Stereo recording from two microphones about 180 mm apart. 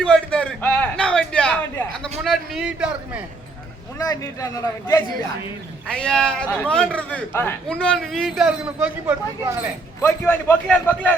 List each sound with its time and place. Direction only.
0.0 s a sound: 5° left (ahead or behind)
2.2 s speech: centre (ahead or behind)
3.9 s a man's voice: 20° left (ahead or behind)
5.9 s speech: 5° left (ahead or behind)
10.0 s a man's voice: 10° left (ahead or behind)